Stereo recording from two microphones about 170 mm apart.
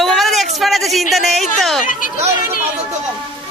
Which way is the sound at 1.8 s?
50° left (ahead or behind).